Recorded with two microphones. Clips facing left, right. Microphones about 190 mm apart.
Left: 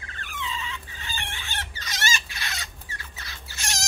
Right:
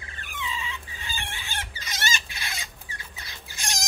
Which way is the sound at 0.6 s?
10° right (ahead or behind).